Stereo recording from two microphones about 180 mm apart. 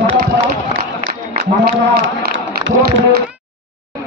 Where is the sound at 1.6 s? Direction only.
60° right (ahead or behind).